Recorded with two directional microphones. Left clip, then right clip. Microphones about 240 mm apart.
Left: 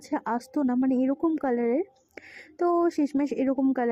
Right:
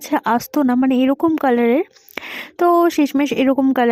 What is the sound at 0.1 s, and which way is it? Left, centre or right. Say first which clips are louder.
Speech: right 11 dB; right.